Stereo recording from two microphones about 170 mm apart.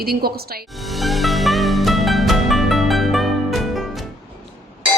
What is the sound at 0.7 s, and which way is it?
Music, centre (ahead or behind).